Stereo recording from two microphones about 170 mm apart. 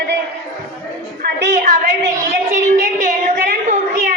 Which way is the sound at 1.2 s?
70° right (ahead or behind).